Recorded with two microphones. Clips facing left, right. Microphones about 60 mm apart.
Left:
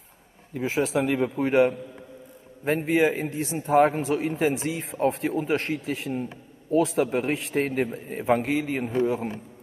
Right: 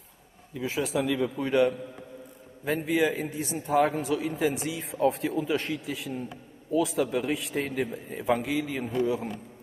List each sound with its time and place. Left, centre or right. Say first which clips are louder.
0.6 s a man's voice: left 4 dB; left
4.4 s speech: left 3 dB; left
4.6 s a man's voice: left 1 dB; left